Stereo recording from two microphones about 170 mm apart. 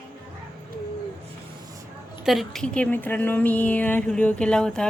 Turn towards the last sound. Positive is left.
turn(degrees=5)  # may be behind; listen again after turning